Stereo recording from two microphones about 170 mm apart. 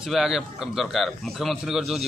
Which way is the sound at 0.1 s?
Centre (ahead or behind).